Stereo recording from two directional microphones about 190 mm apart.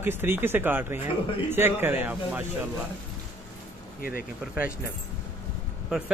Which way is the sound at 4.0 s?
50° left (ahead or behind).